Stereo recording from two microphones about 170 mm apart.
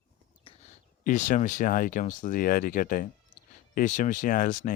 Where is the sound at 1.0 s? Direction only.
50° left (ahead or behind).